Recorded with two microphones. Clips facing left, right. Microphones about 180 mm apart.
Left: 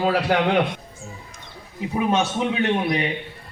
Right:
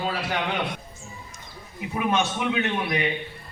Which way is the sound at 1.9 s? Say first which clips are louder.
Left 3 dB; 30° left (ahead or behind).